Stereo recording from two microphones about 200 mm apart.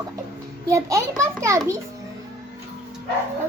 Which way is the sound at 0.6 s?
15° right (ahead or behind).